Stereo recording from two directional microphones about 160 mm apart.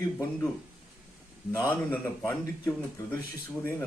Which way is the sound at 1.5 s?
15° left (ahead or behind).